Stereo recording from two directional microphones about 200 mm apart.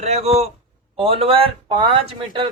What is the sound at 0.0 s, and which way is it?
Speech, 30° right (ahead or behind).